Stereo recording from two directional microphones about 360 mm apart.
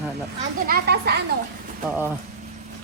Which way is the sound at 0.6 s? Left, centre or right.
Right.